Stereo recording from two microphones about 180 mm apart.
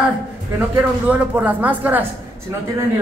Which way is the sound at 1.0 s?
10° right (ahead or behind).